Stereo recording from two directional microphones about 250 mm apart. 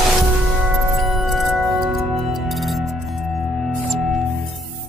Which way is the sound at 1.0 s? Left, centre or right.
Centre.